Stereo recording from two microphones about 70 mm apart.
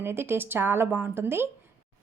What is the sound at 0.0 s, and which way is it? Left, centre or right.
A woman's voice, right.